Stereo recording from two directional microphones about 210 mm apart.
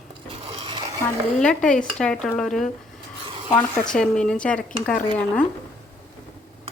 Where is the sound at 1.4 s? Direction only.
5° left (ahead or behind).